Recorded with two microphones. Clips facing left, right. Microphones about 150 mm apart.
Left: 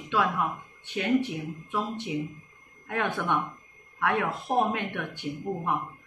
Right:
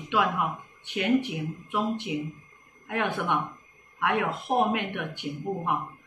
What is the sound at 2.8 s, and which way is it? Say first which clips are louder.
A woman's voice: right 1 dB; 15° right (ahead or behind).